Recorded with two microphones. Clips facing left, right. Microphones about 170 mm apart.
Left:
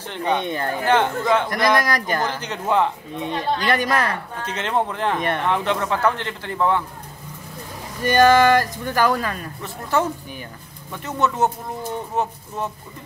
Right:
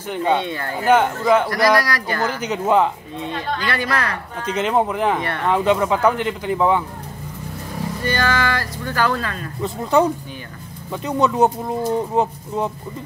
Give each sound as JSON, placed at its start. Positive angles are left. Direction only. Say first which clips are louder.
{"t": 0.1, "sound": "speech", "louder": "right 4 dB", "side_deg": -10}
{"t": 0.4, "sound": "speech", "louder": "even", "side_deg": 20}
{"t": 0.8, "sound": "speech", "louder": "right 4 dB", "side_deg": -10}
{"t": 1.5, "sound": "speech", "louder": "right 2 dB", "side_deg": 20}
{"t": 2.3, "sound": "speech", "louder": "right 4 dB", "side_deg": -10}
{"t": 3.2, "sound": "speech", "louder": "left 2 dB", "side_deg": 20}
{"t": 4.5, "sound": "speech", "louder": "right 5 dB", "side_deg": -10}
{"t": 8.0, "sound": "speech", "louder": "left 8 dB", "side_deg": 15}
{"t": 9.6, "sound": "speech", "louder": "right 6 dB", "side_deg": -15}